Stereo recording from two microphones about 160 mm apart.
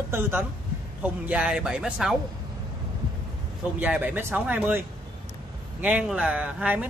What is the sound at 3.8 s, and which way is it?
Speech, 10° right (ahead or behind).